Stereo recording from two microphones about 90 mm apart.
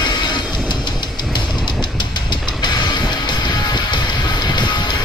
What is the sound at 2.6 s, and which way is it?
Music, 55° left (ahead or behind).